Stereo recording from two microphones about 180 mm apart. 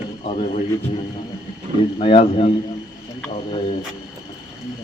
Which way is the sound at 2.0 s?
30° left (ahead or behind).